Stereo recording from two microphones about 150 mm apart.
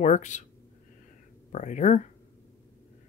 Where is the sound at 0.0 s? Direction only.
55° left (ahead or behind).